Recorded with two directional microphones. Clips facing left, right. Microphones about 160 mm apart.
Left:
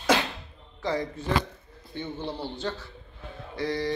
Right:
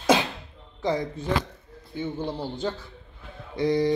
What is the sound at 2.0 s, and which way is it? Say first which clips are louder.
Speech: right 3 dB; 10° right (ahead or behind).